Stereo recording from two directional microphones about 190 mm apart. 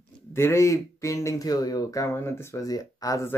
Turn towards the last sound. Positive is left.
turn(degrees=15)  # may be behind; listen again after turning